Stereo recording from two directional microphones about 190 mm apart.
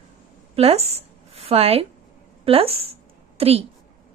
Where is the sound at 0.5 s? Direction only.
30° right (ahead or behind).